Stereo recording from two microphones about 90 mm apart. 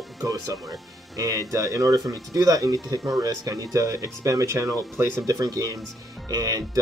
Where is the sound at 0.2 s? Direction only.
45° right (ahead or behind).